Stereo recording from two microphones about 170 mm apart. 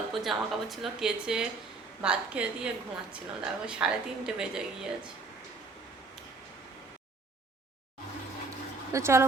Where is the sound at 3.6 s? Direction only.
5° right (ahead or behind).